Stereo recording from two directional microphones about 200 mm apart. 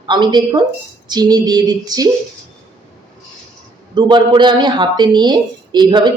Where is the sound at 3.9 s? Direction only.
25° right (ahead or behind).